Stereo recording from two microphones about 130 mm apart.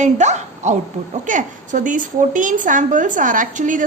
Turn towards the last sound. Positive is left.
turn(degrees=-80)